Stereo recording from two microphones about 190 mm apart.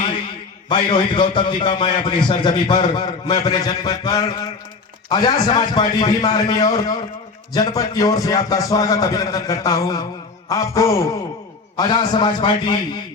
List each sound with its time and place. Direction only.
0.7 s a man's voice: 25° left (ahead or behind)
10.5 s a sound: 15° left (ahead or behind)
11.8 s a man's voice: 20° left (ahead or behind)